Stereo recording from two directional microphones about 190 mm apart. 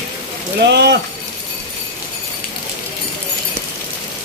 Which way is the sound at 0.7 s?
60° right (ahead or behind).